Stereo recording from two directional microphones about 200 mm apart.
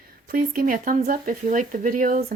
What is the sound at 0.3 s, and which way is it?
Speech, 45° right (ahead or behind).